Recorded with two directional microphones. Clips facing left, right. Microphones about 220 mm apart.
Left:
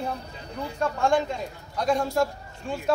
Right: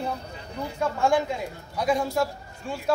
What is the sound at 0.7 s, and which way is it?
Speech, 5° right (ahead or behind).